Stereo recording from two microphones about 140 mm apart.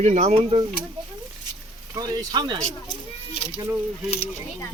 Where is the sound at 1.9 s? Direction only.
25° right (ahead or behind).